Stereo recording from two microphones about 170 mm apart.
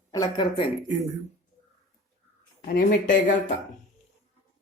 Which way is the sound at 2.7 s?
55° left (ahead or behind).